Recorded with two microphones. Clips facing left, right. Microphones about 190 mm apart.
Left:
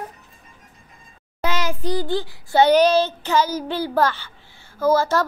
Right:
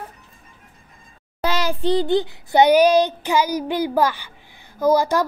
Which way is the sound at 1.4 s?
35° right (ahead or behind).